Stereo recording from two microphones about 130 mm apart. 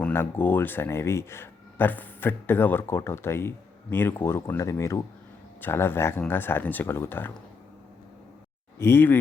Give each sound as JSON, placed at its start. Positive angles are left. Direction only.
{"t": 0.0, "sound": "speech", "side_deg": 15}
{"t": 8.8, "sound": "speech", "side_deg": 20}